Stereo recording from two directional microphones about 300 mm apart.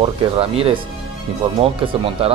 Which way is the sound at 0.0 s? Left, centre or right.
Centre.